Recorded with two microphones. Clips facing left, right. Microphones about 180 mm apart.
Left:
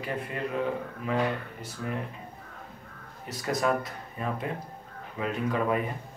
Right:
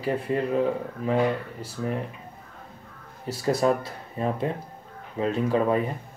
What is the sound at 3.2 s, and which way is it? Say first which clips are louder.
Speech: right 5 dB; 30° right (ahead or behind).